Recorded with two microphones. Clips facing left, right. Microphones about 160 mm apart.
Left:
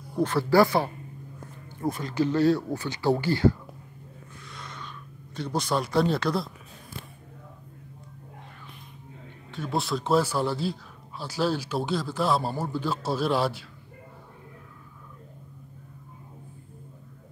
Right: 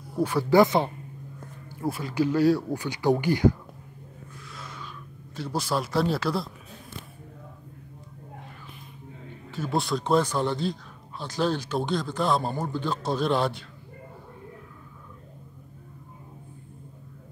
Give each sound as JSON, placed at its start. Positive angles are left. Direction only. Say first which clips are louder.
{"t": 0.1, "sound": "speech", "louder": "right 1 dB", "side_deg": -10}
{"t": 1.7, "sound": "speech", "louder": "even", "side_deg": -5}
{"t": 4.5, "sound": "a sound", "louder": "even", "side_deg": -5}
{"t": 9.5, "sound": "speech", "louder": "right 2 dB", "side_deg": 0}